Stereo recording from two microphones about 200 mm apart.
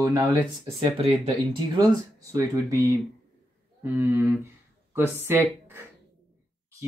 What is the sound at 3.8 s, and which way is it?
Speech, 10° right (ahead or behind).